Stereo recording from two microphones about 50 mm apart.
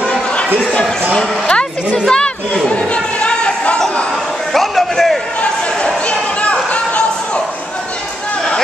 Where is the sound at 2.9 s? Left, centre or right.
Left.